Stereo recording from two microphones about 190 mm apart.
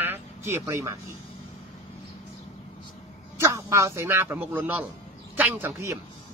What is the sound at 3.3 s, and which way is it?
A man's voice, 15° right (ahead or behind).